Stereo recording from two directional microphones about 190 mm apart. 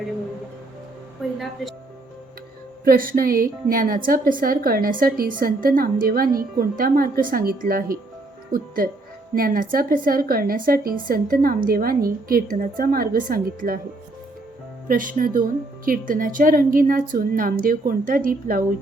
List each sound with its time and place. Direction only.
1.2 s a woman's voice: centre (ahead or behind)
2.8 s a woman's voice: 50° right (ahead or behind)
14.8 s a woman's voice: 45° right (ahead or behind)